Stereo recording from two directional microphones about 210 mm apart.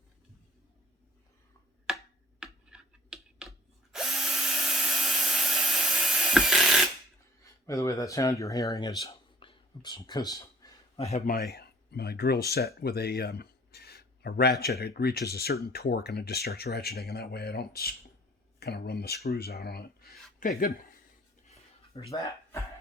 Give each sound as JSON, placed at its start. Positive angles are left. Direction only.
{"t": 2.4, "sound": "a sound", "side_deg": -5}
{"t": 3.9, "sound": "drill", "side_deg": 0}
{"t": 7.4, "sound": "speech", "side_deg": 15}
{"t": 9.0, "sound": "whispering", "side_deg": 25}
{"t": 11.5, "sound": "speech", "side_deg": 50}
{"t": 21.4, "sound": "a sound", "side_deg": 30}